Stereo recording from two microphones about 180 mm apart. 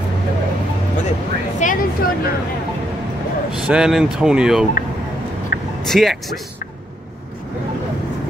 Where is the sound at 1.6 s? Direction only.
40° left (ahead or behind).